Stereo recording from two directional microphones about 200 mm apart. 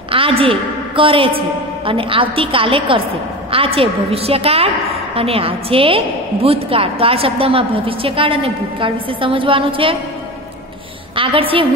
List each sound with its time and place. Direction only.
0.1 s a woman's voice: 25° right (ahead or behind)
11.1 s a woman's voice: 25° right (ahead or behind)